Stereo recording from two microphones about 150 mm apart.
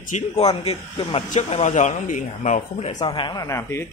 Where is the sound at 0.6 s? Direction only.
40° left (ahead or behind).